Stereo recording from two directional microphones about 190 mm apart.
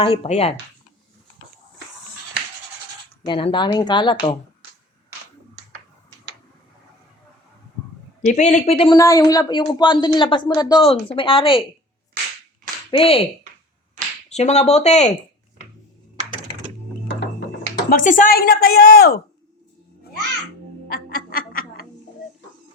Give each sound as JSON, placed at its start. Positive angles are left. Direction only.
{"t": 0.0, "sound": "speech", "side_deg": 30}
{"t": 3.2, "sound": "speech", "side_deg": 25}
{"t": 8.2, "sound": "speech", "side_deg": 40}
{"t": 9.0, "sound": "speech", "side_deg": 15}
{"t": 12.9, "sound": "speech", "side_deg": 30}
{"t": 14.3, "sound": "speech", "side_deg": 35}
{"t": 17.8, "sound": "speech", "side_deg": 45}
{"t": 20.8, "sound": "a sound", "side_deg": 55}